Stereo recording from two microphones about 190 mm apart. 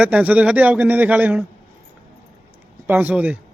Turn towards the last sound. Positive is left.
turn(degrees=-10)  # may be behind; listen again after turning